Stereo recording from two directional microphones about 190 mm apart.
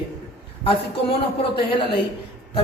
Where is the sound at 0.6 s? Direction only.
30° left (ahead or behind).